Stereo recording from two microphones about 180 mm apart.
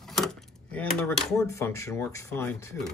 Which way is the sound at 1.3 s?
15° left (ahead or behind).